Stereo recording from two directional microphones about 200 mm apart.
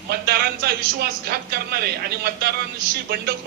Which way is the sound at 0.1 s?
50° right (ahead or behind).